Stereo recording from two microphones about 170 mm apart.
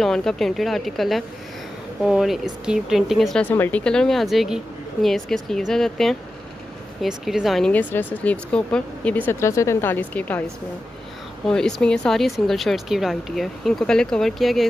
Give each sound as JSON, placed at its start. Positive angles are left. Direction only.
{"t": 0.0, "sound": "speech", "side_deg": 5}
{"t": 11.4, "sound": "speech", "side_deg": 5}